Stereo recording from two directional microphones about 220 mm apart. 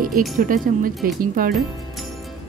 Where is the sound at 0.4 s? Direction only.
40° right (ahead or behind).